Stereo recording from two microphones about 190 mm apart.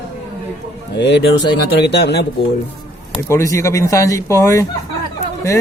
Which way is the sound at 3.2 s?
15° left (ahead or behind).